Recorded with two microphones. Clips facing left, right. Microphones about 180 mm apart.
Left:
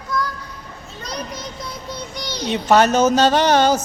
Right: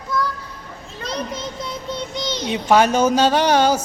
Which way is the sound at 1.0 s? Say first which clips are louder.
Right 3 dB; 25° right (ahead or behind).